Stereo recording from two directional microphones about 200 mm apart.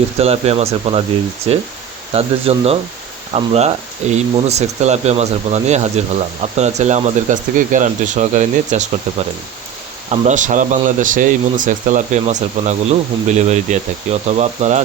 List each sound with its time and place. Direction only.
0.2 s speech: 30° right (ahead or behind)